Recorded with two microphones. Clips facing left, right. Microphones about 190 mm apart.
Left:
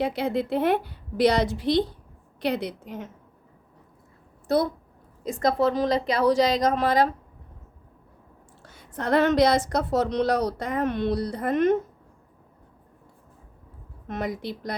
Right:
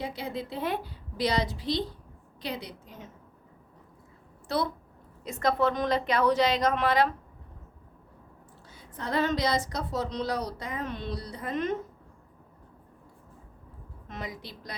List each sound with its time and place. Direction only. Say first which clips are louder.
0.0 s speech: left 9 dB; 85° left
0.5 s a woman's voice: left 9 dB; 65° left (ahead or behind)
4.4 s a woman's voice: left 7 dB; 50° left (ahead or behind)
5.2 s a woman's voice: left 4 dB; 40° left (ahead or behind)
8.6 s a woman's voice: left 7 dB; 75° left (ahead or behind)
14.1 s a woman's voice: left 10 dB; 60° left (ahead or behind)